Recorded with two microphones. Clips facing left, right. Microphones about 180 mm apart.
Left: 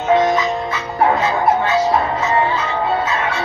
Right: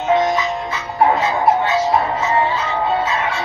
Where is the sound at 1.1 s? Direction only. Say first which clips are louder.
Even; 20° right (ahead or behind).